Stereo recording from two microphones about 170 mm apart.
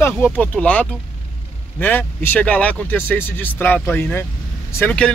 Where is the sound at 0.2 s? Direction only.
10° left (ahead or behind).